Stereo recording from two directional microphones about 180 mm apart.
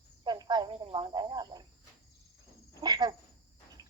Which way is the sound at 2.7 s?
20° right (ahead or behind).